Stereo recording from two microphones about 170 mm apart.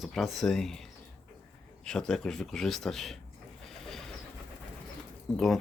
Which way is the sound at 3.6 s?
Centre (ahead or behind).